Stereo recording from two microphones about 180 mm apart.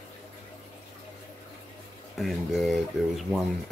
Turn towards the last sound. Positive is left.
turn(degrees=0)  # may be behind; listen again after turning